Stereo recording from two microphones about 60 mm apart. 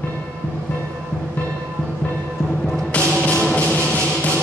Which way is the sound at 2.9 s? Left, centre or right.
Left.